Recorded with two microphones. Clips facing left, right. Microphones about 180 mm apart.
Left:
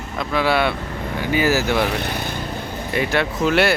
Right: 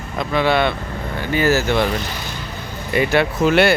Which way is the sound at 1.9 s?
60° left (ahead or behind).